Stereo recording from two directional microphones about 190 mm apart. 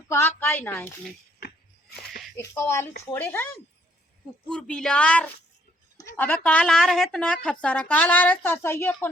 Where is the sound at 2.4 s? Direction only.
15° left (ahead or behind).